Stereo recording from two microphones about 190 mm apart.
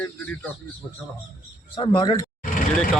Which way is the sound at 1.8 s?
20° left (ahead or behind).